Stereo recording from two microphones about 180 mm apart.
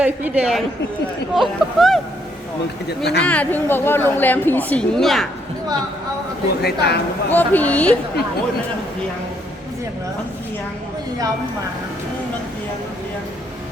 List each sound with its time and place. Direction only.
0.0 s a woman's voice: 5° right (ahead or behind)
3.0 s speech: 65° left (ahead or behind)
3.2 s speech: 10° left (ahead or behind)
6.6 s speech: 65° left (ahead or behind)
7.3 s speech: 10° left (ahead or behind)